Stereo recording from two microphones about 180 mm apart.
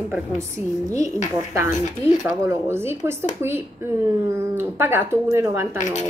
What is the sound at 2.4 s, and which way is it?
Speech, 15° right (ahead or behind).